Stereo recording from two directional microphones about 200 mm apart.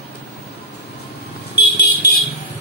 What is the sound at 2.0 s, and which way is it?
Vehicle, 55° left (ahead or behind).